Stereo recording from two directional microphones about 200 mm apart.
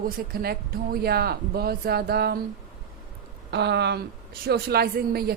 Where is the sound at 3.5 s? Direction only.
55° right (ahead or behind).